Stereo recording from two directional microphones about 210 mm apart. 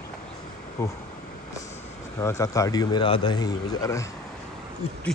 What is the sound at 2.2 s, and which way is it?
A man's voice, 15° left (ahead or behind).